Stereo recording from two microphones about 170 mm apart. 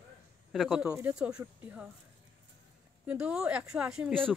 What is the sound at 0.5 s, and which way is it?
Speech, centre (ahead or behind).